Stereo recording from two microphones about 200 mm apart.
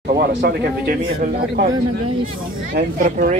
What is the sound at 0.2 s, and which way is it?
Speech, 55° right (ahead or behind).